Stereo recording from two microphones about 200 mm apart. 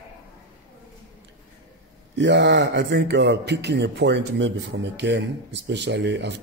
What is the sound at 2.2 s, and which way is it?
Speech, 65° right (ahead or behind).